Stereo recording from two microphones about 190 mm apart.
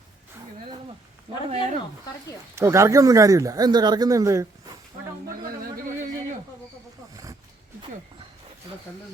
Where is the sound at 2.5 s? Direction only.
15° right (ahead or behind).